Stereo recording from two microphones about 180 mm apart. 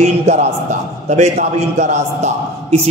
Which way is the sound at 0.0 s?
40° right (ahead or behind).